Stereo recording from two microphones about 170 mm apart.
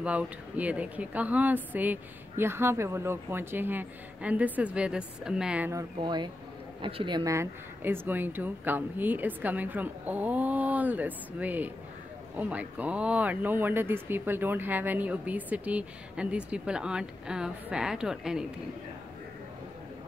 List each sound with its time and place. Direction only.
0.0 s speech: 10° right (ahead or behind)
5.7 s speech: 20° right (ahead or behind); by 18.5 s 5° right (ahead or behind)